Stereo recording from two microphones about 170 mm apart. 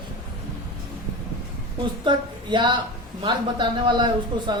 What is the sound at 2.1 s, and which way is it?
A woman's voice, 25° right (ahead or behind).